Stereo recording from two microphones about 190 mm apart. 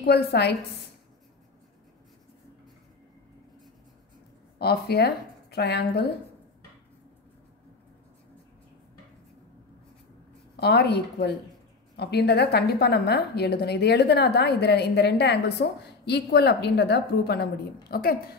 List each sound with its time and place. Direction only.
0.0 s a woman's voice: 60° left (ahead or behind)
4.6 s a woman's voice: 55° left (ahead or behind)
10.5 s a woman's voice: 60° left (ahead or behind)